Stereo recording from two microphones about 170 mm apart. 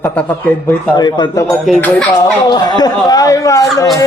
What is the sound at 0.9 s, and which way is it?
Speech, 25° left (ahead or behind).